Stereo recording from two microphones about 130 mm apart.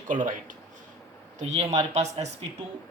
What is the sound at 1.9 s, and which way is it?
Speech, 60° right (ahead or behind).